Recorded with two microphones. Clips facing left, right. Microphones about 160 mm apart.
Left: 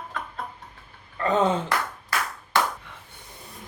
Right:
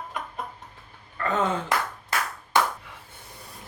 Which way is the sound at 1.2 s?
20° left (ahead or behind).